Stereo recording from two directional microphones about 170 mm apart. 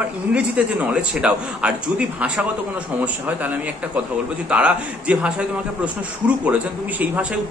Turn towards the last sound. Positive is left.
turn(degrees=-10)  # may be behind; listen again after turning